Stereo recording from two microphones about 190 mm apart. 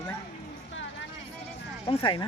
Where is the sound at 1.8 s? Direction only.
25° left (ahead or behind).